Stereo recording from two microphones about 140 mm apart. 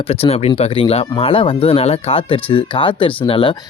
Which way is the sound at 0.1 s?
45° left (ahead or behind).